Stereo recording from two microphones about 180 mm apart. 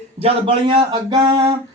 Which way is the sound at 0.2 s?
30° right (ahead or behind).